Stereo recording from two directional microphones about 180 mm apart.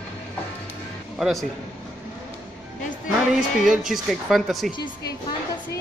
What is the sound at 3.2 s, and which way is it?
Speech, 5° right (ahead or behind).